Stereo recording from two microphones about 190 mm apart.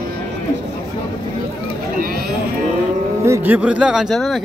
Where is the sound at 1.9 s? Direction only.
50° right (ahead or behind).